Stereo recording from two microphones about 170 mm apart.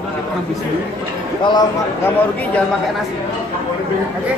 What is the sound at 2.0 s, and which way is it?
Mantra, 10° left (ahead or behind).